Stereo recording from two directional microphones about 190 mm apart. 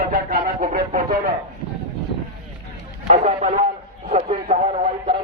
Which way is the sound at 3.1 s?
35° right (ahead or behind).